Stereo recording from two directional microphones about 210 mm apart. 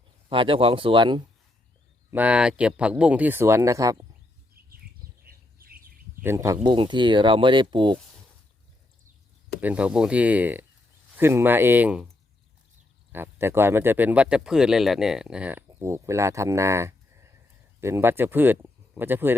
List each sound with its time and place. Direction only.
0.3 s speech: 25° right (ahead or behind)
2.0 s speech: 10° right (ahead or behind)
5.2 s bird: 45° right (ahead or behind)
6.2 s speech: 15° right (ahead or behind)
9.6 s speech: 5° right (ahead or behind)
13.1 s speech: 10° right (ahead or behind)